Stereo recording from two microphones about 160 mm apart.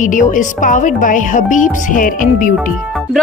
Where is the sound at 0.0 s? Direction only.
55° left (ahead or behind).